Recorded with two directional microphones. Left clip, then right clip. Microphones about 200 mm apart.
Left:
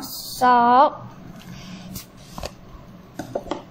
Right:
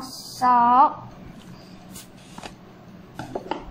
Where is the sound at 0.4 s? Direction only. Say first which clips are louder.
Left 2 dB; 35° left (ahead or behind).